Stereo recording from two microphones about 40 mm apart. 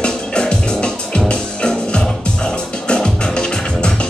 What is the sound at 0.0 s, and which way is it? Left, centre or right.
Music, left.